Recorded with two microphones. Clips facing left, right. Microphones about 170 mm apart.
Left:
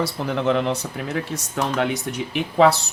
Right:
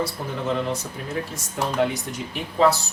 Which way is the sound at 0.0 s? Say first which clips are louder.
Left 5 dB; 70° left (ahead or behind).